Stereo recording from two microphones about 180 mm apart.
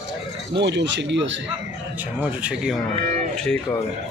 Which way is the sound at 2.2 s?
5° right (ahead or behind).